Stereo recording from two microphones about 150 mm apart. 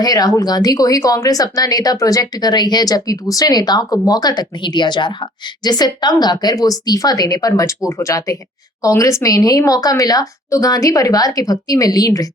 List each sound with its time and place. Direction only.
0.0 s speech: 25° left (ahead or behind)